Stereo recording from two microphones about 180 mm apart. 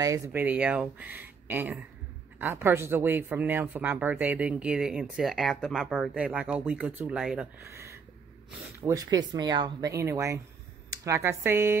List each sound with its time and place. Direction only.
0.0 s speech: 15° right (ahead or behind)
7.6 s a sound: 15° right (ahead or behind)
8.8 s speech: 20° right (ahead or behind)